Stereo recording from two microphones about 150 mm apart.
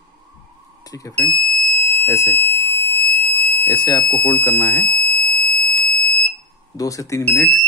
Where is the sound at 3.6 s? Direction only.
25° left (ahead or behind).